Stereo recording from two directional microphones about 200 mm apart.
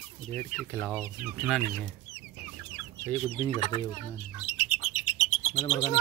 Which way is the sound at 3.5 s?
25° left (ahead or behind).